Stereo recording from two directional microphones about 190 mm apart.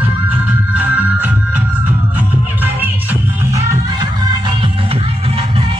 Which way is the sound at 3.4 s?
15° right (ahead or behind).